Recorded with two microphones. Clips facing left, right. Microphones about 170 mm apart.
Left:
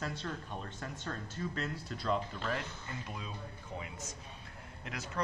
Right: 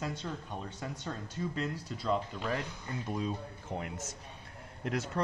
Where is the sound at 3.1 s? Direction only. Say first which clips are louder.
Right 10 dB; 45° right (ahead or behind).